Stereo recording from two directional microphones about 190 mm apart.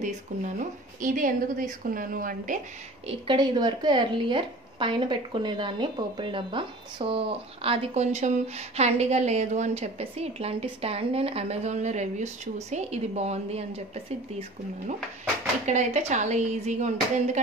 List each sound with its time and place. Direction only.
0.0 s a woman's voice: 40° right (ahead or behind)
3.1 s a woman's voice: 25° right (ahead or behind)
15.6 s a woman's voice: 40° right (ahead or behind)